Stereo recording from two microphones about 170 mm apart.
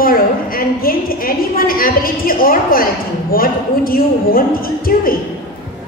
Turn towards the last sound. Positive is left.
turn(degrees=60)  # may be behind; listen again after turning